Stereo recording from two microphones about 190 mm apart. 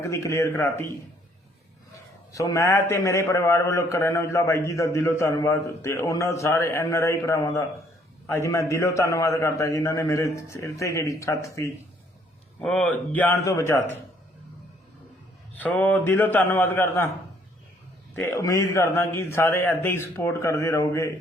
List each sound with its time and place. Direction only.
0.0 s a man's voice: 15° left (ahead or behind)
2.3 s a man's voice: 15° left (ahead or behind)
12.5 s a man's voice: 5° left (ahead or behind)
15.5 s a man's voice: 10° left (ahead or behind)
18.1 s a man's voice: 10° left (ahead or behind)